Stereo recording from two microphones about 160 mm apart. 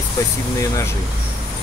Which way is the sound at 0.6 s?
20° left (ahead or behind).